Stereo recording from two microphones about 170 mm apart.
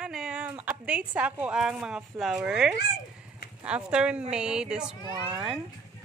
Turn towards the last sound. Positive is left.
turn(degrees=-25)  # may be behind; listen again after turning